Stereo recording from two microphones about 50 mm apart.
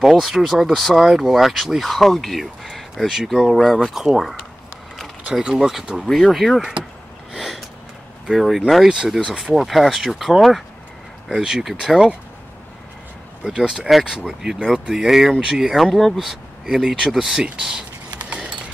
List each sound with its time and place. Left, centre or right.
0.0 s speech: centre
3.9 s speech: centre
5.4 s speech: centre
7.3 s gasp: centre
8.3 s speech: centre
8.8 s speech: centre
9.6 s speech: centre
13.5 s speech: centre
15.8 s speech: centre